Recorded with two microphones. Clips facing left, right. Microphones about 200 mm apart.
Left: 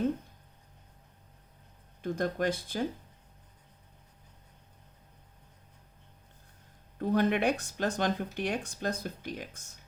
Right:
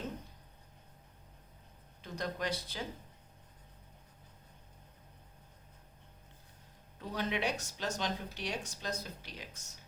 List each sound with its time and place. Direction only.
2.0 s speech: 50° left (ahead or behind)
7.0 s speech: 55° left (ahead or behind)